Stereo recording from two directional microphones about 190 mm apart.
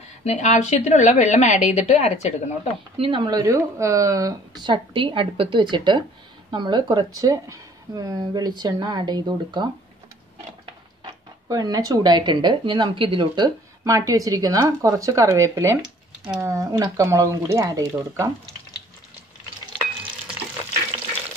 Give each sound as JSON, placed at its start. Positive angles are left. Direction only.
{"t": 0.2, "sound": "a woman's voice", "side_deg": 35}
{"t": 3.0, "sound": "speech", "side_deg": -25}
{"t": 11.4, "sound": "speech", "side_deg": -20}
{"t": 15.8, "sound": "computer keyboard", "side_deg": -5}
{"t": 16.4, "sound": "speech", "side_deg": -15}